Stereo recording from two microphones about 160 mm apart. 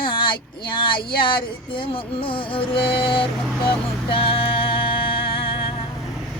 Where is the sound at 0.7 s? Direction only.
30° left (ahead or behind).